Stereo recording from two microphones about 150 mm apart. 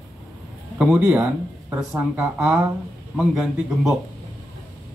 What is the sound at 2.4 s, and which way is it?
Speech, 20° right (ahead or behind).